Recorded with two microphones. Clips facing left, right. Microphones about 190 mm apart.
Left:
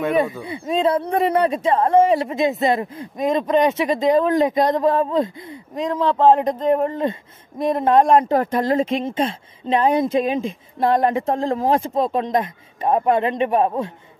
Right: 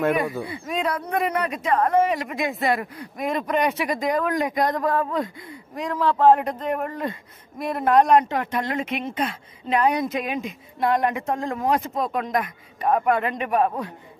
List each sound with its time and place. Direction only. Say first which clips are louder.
0.4 s speech: left 6 dB; 25° left (ahead or behind)